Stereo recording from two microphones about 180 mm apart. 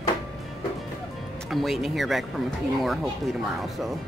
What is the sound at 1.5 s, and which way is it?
Speech, centre (ahead or behind).